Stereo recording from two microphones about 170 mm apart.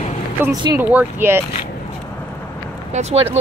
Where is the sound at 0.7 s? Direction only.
10° right (ahead or behind).